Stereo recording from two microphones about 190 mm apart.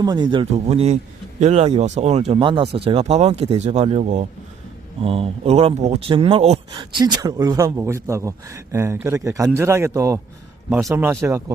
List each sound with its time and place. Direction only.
0.0 s a man's voice: 20° right (ahead or behind)